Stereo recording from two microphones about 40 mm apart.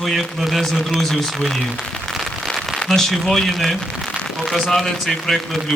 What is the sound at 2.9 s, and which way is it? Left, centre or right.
Speech, centre.